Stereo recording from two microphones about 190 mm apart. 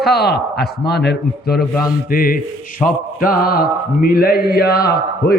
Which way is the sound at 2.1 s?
50° left (ahead or behind).